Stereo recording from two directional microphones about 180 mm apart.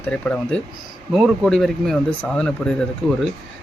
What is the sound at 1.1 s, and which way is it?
Speech, centre (ahead or behind).